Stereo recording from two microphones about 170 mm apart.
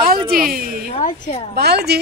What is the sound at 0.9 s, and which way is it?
Speech, 35° left (ahead or behind).